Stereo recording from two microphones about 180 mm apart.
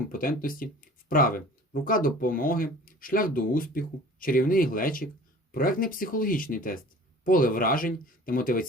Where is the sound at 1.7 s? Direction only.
50° left (ahead or behind).